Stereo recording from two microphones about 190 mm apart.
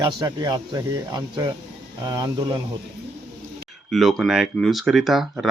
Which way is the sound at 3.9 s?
Centre (ahead or behind).